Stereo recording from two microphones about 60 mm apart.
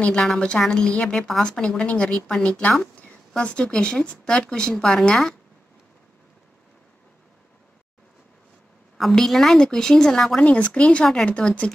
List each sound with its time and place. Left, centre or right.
0.0 s a woman's voice: centre
8.9 s a woman's voice: centre
10.4 s a woman's voice: left